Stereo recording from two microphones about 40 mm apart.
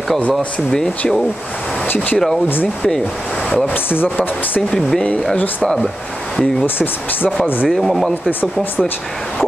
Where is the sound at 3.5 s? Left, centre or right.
Left.